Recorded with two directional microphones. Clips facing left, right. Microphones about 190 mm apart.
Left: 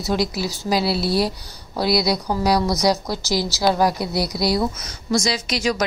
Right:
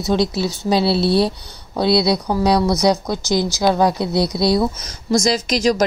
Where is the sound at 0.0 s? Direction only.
25° right (ahead or behind).